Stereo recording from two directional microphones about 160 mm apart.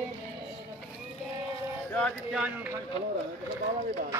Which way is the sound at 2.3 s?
10° right (ahead or behind).